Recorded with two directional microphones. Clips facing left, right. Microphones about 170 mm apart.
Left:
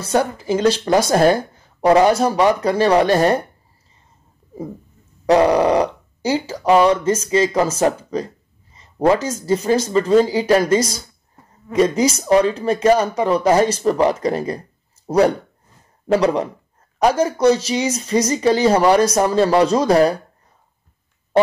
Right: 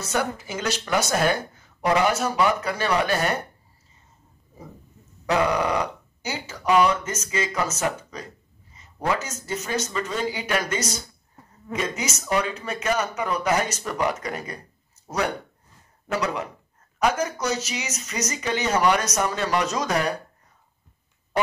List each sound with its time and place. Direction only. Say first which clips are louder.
0.0 s speech: left 7 dB; 30° left (ahead or behind)
5.2 s speech: left 9 dB; 35° left (ahead or behind)
8.7 s a sound: left 10 dB; 35° left (ahead or behind)
9.5 s speech: left 11 dB; 35° left (ahead or behind)